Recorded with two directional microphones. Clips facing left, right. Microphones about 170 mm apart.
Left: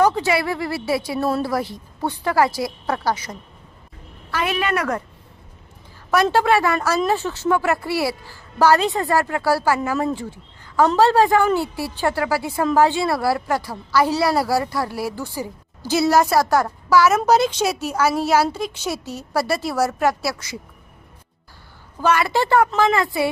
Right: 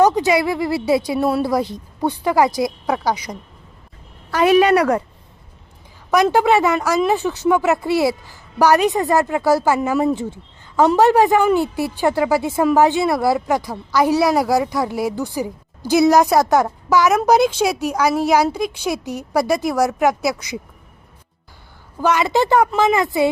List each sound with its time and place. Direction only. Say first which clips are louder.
0.0 s a woman's voice: right 3 dB; 15° right (ahead or behind)
4.7 s a woman's voice: right 7 dB; 35° right (ahead or behind)
6.1 s a woman's voice: right 3 dB; 15° right (ahead or behind)
22.0 s a woman's voice: right 2 dB; 20° right (ahead or behind)